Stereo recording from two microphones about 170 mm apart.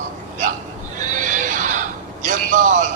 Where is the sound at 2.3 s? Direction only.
45° right (ahead or behind).